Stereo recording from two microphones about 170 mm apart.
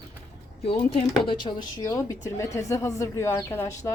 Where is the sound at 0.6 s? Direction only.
35° left (ahead or behind).